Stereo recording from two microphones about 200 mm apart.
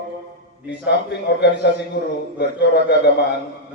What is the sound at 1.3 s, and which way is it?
A man's voice, 55° left (ahead or behind).